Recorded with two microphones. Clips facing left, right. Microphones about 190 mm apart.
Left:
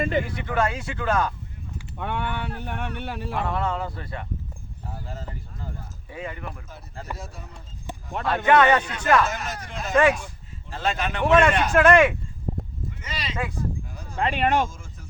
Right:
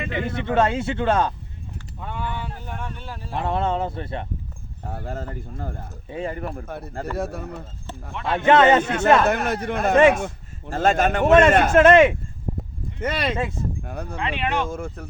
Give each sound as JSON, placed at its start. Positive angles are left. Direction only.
{"t": 0.3, "sound": "a man's voice", "side_deg": -25}
{"t": 2.0, "sound": "speech", "side_deg": 70}
{"t": 3.3, "sound": "a man's voice", "side_deg": -25}
{"t": 4.8, "sound": "speech", "side_deg": -55}
{"t": 6.1, "sound": "a man's voice", "side_deg": -30}
{"t": 6.3, "sound": "speech", "side_deg": -40}
{"t": 6.7, "sound": "speech", "side_deg": -60}
{"t": 8.3, "sound": "a man's voice", "side_deg": -25}
{"t": 9.2, "sound": "speech", "side_deg": -60}
{"t": 11.7, "sound": "a man's voice", "side_deg": -25}
{"t": 13.0, "sound": "speech", "side_deg": -55}
{"t": 14.2, "sound": "speech", "side_deg": 40}
{"t": 14.7, "sound": "speech", "side_deg": -60}